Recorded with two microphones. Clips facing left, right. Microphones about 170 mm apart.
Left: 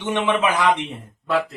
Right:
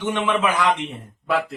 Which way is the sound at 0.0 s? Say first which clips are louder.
Left 1 dB; 20° left (ahead or behind).